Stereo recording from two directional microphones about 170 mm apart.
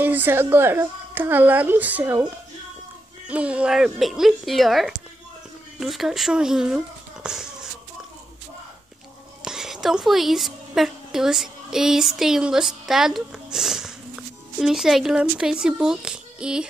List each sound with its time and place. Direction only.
0.0 s a woman's voice: 10° right (ahead or behind)
3.3 s speech: 5° right (ahead or behind)
9.4 s a woman's voice: 5° right (ahead or behind)